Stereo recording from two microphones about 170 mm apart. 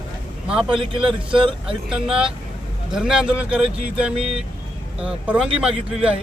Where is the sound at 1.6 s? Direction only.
5° right (ahead or behind).